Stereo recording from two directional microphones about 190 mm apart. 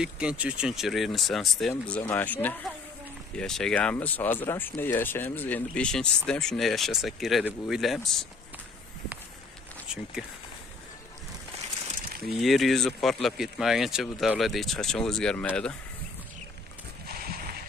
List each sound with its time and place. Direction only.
0.0 s speech: 5° right (ahead or behind)
12.4 s speech: centre (ahead or behind)
17.0 s horse: 50° right (ahead or behind)